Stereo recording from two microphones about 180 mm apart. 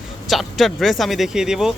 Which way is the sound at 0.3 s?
Centre (ahead or behind).